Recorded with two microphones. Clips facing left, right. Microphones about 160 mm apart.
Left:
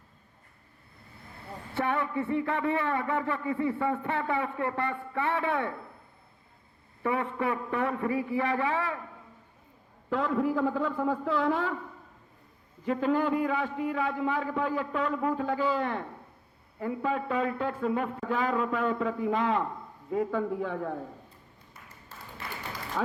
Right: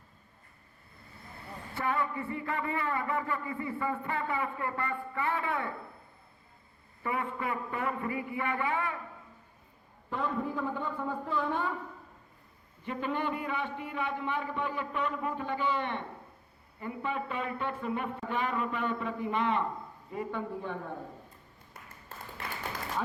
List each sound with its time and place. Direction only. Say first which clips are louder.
1.7 s speech: left 3 dB; 75° left (ahead or behind)
7.0 s a man's voice: left 5 dB; 80° left
8.4 s a man's voice: left 1 dB; 90° left
10.1 s a man's voice: left 6 dB; 90° left
12.8 s a man's voice: left 7 dB; 90° left
23.0 s a man's voice: left 4 dB; 90° left